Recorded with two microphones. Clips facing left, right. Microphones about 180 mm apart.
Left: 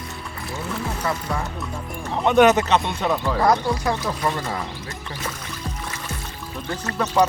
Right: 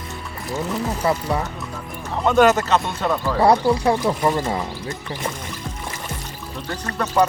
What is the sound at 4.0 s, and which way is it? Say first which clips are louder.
Speech: right 5 dB; 15° right (ahead or behind).